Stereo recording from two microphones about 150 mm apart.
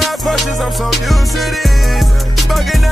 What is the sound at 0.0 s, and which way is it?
Music, centre (ahead or behind).